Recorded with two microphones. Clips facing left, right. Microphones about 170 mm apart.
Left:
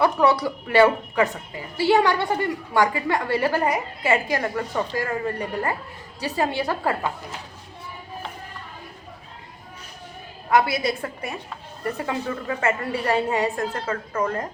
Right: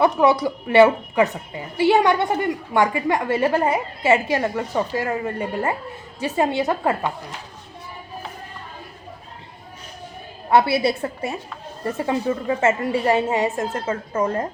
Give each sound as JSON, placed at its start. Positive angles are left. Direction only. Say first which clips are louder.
{"t": 0.0, "sound": "a woman's voice", "louder": "right 2 dB", "side_deg": -20}
{"t": 10.5, "sound": "a woman's voice", "louder": "right 3 dB", "side_deg": -30}